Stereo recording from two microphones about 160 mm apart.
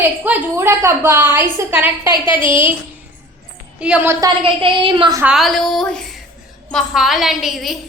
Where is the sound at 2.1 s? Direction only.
30° left (ahead or behind).